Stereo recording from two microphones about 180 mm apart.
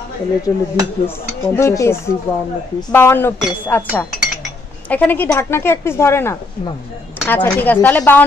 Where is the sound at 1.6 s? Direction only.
15° left (ahead or behind).